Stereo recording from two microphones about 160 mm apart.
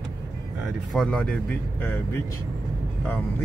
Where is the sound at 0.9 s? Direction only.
5° left (ahead or behind).